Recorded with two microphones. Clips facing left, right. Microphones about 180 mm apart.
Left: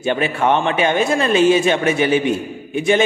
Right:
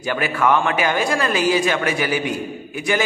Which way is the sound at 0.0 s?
25° left (ahead or behind).